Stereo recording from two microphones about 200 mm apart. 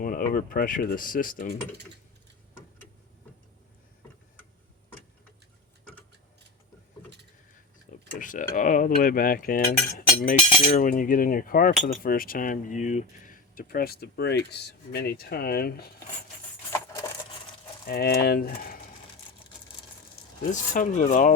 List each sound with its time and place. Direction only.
0.0 s speech: 45° left (ahead or behind)
7.9 s tick-tock: 45° left (ahead or behind)
8.2 s speech: 40° left (ahead or behind)
10.3 s cutlery: 30° left (ahead or behind)
10.8 s speech: 45° left (ahead or behind)
17.8 s speech: 50° left (ahead or behind)
20.4 s speech: 40° left (ahead or behind)